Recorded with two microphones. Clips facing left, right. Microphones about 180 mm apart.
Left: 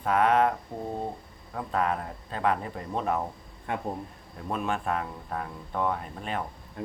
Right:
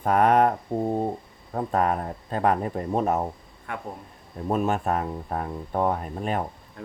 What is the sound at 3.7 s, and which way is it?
Speech, 20° left (ahead or behind).